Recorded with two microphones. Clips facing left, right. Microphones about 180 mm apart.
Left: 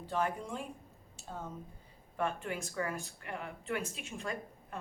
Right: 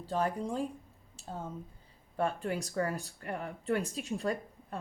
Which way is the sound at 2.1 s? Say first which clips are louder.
Right 3 dB; 35° right (ahead or behind).